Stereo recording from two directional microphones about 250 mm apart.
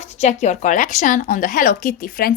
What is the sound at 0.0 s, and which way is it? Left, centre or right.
A woman's voice, left.